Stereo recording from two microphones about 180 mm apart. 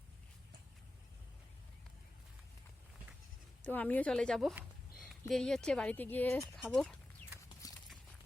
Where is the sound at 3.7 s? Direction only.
10° left (ahead or behind).